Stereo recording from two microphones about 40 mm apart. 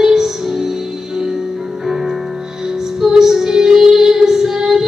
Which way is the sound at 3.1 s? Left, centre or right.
Centre.